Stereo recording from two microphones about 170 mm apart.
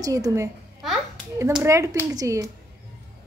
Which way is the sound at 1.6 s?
20° right (ahead or behind).